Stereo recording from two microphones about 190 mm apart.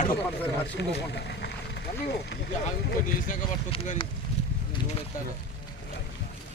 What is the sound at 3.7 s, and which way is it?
Speech, 30° left (ahead or behind).